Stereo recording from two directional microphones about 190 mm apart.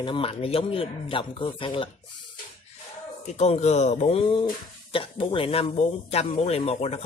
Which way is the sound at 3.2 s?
35° left (ahead or behind).